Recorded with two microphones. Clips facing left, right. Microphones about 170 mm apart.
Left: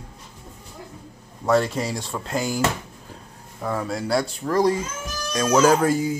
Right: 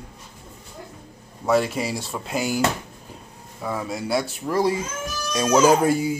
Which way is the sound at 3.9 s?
20° right (ahead or behind).